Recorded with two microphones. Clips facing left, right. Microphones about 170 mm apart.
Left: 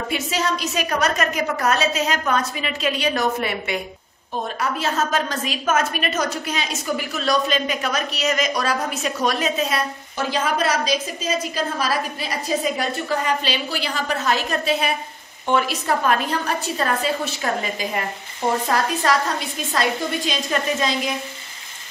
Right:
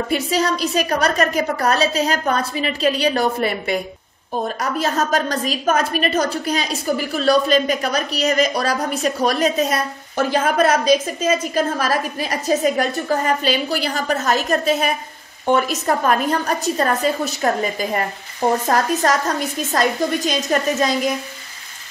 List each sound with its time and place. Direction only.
0.1 s a woman's voice: 35° right (ahead or behind)